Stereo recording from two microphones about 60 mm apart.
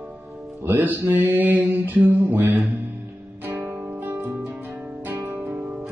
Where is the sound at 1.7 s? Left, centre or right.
Right.